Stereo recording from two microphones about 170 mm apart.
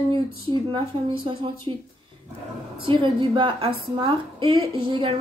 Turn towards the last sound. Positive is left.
turn(degrees=-30)  # may be behind; listen again after turning